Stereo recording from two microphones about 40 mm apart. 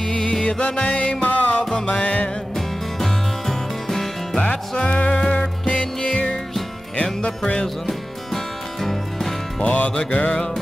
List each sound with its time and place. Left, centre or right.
0.0 s music: left
1.6 s music: centre
1.9 s music: left
2.5 s music: centre
4.4 s music: left
7.2 s music: left
7.6 s music: centre
9.6 s music: left
10.3 s music: centre